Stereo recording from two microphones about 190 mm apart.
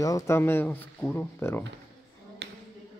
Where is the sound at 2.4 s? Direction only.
65° right (ahead or behind).